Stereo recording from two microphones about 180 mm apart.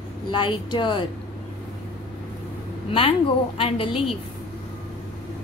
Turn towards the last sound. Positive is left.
turn(degrees=30)  # may be behind; listen again after turning